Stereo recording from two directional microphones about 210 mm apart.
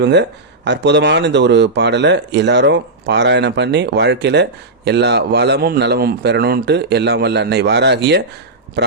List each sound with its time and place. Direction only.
0.0 s speech: 55° right (ahead or behind)